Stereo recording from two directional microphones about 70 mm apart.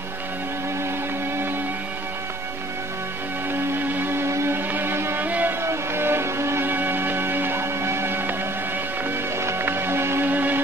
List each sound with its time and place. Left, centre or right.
4.3 s music: right
5.6 s a sound: right
9.4 s music: right